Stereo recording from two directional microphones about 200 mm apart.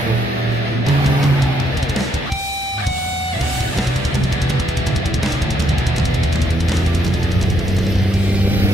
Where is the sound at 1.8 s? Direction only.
Centre (ahead or behind).